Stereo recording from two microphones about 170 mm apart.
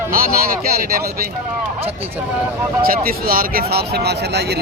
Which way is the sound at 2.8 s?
60° right (ahead or behind).